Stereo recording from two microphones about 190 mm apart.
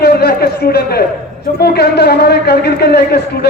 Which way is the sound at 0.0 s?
55° left (ahead or behind).